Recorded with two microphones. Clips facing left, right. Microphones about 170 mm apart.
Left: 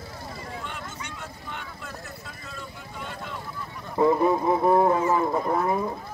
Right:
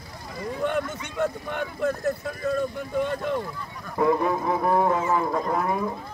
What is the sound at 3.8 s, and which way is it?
Speech, 25° left (ahead or behind).